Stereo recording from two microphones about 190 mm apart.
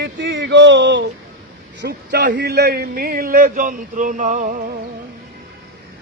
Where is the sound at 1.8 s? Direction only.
60° right (ahead or behind); by 4.6 s 40° right (ahead or behind).